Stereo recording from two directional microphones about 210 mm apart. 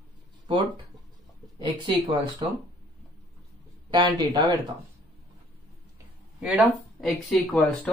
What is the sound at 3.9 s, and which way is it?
Speech, 20° right (ahead or behind).